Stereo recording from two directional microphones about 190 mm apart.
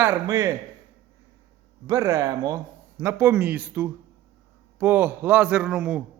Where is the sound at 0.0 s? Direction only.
15° right (ahead or behind).